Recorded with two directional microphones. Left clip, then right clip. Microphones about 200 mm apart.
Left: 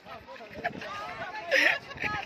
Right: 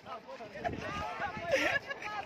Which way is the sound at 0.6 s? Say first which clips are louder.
Left 2 dB; centre (ahead or behind).